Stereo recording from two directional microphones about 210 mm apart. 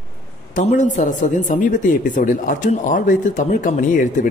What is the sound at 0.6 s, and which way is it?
Speech, 35° left (ahead or behind).